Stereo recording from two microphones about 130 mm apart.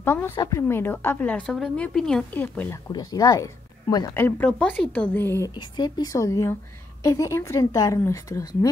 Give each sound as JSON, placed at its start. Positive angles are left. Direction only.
{"t": 0.0, "sound": "a woman's voice", "side_deg": 20}
{"t": 2.9, "sound": "speech", "side_deg": 30}
{"t": 5.5, "sound": "a woman's voice", "side_deg": 35}